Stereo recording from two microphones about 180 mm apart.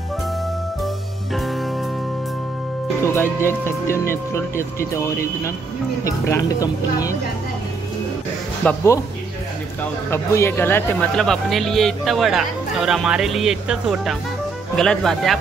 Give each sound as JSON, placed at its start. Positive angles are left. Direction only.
{"t": 3.0, "sound": "speech", "side_deg": 15}
{"t": 8.6, "sound": "speech", "side_deg": 15}
{"t": 10.0, "sound": "speech", "side_deg": 15}